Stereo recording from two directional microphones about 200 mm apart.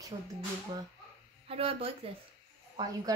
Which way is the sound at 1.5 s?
30° right (ahead or behind).